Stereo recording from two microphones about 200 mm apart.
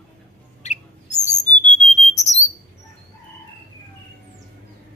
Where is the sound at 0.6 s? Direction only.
35° left (ahead or behind).